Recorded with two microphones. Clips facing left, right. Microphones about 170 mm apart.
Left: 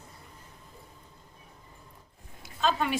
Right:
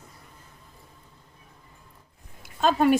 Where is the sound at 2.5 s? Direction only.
50° right (ahead or behind).